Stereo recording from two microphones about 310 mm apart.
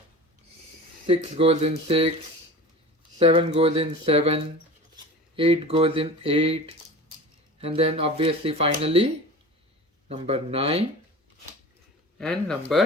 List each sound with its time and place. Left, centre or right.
1.0 s speech: centre
3.2 s speech: centre
5.4 s speech: centre
10.1 s speech: centre
12.2 s speech: centre